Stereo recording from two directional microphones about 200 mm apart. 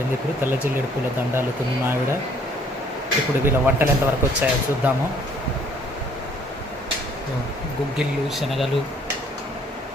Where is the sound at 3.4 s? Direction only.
10° right (ahead or behind).